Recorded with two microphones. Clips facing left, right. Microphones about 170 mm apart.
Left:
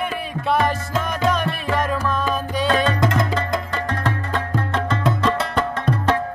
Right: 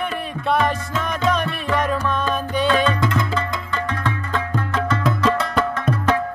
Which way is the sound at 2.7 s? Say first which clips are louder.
Left 2 dB; 45° left (ahead or behind).